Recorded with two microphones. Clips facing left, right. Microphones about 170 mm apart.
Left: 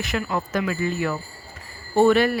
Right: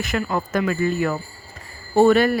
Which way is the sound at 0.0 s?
50° right (ahead or behind).